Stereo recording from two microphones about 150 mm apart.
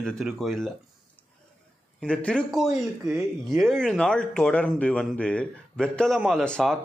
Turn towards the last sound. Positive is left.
turn(degrees=5)  # may be behind; listen again after turning